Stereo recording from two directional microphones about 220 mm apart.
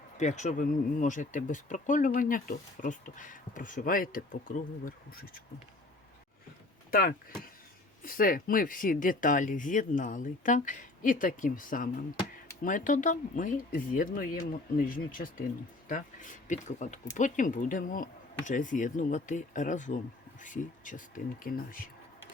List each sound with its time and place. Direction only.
0.2 s speech: 35° left (ahead or behind)
8.0 s speech: 40° left (ahead or behind)